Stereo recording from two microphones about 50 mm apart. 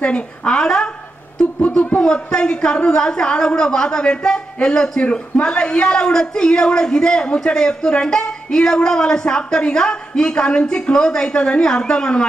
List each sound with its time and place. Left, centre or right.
0.0 s speech: left
2.0 s a man's voice: centre